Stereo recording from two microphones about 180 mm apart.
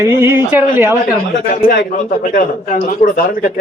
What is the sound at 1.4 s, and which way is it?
A man's voice, 55° left (ahead or behind).